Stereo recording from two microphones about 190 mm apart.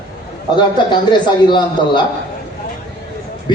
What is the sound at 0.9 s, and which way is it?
A man's voice, 25° left (ahead or behind).